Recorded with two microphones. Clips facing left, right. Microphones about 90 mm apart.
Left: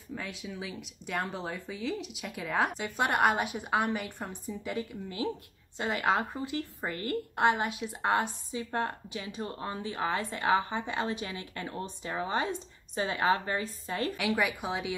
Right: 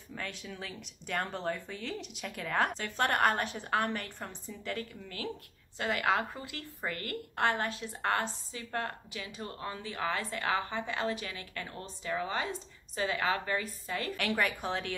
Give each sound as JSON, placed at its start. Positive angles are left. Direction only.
{"t": 0.1, "sound": "a woman's voice", "side_deg": 5}
{"t": 14.1, "sound": "a woman's voice", "side_deg": 5}